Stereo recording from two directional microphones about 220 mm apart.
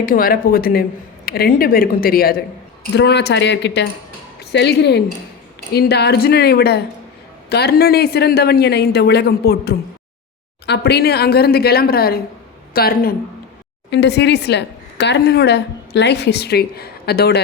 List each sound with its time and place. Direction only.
0.0 s a woman's voice: 40° left (ahead or behind)